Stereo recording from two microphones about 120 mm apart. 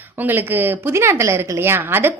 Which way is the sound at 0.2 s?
15° right (ahead or behind).